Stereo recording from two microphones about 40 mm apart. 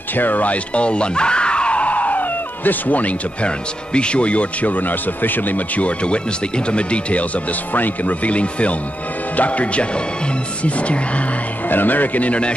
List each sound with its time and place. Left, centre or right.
0.1 s music: left
3.4 s speech: left
5.9 s speech: left
7.7 s speech: left
11.7 s a man's voice: left